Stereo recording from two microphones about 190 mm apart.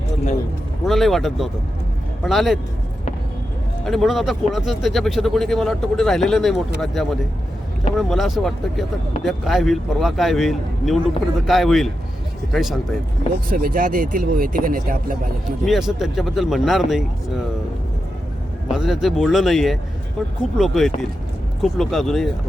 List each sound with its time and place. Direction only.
0.9 s speech: centre (ahead or behind)
3.8 s speech: centre (ahead or behind)
13.5 s speech: 50° right (ahead or behind)
15.6 s speech: centre (ahead or behind)
18.7 s speech: centre (ahead or behind)